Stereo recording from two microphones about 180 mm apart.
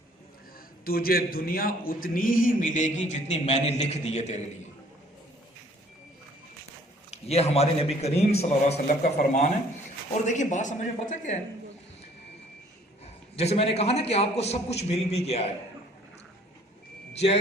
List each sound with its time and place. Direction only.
0.9 s a man's voice: 55° left (ahead or behind); by 4.7 s 40° left (ahead or behind)
7.1 s a man's voice: 35° left (ahead or behind)
13.3 s a man's voice: 35° left (ahead or behind)